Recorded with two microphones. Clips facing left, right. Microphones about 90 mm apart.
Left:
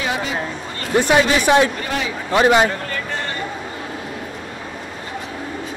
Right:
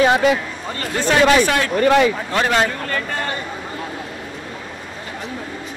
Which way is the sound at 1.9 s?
65° right (ahead or behind).